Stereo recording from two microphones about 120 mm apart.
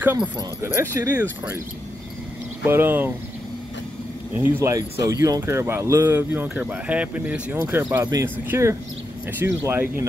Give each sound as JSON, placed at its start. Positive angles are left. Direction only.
{"t": 0.0, "sound": "speech", "side_deg": -15}
{"t": 2.6, "sound": "speech", "side_deg": -20}
{"t": 4.4, "sound": "speech", "side_deg": -20}
{"t": 8.0, "sound": "speech", "side_deg": -30}